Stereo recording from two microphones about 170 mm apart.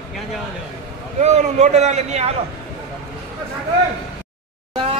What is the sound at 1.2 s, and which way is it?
A man's voice, 40° right (ahead or behind).